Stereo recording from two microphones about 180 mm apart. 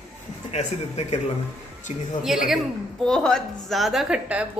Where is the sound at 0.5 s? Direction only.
35° left (ahead or behind).